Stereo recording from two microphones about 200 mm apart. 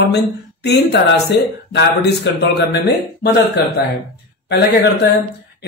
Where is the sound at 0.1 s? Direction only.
55° left (ahead or behind).